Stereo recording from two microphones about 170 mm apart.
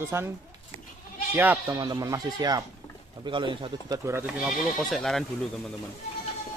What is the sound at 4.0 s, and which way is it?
Speech, 15° right (ahead or behind).